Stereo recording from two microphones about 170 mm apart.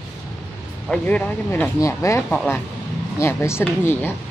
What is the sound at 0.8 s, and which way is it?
Speech, 5° left (ahead or behind).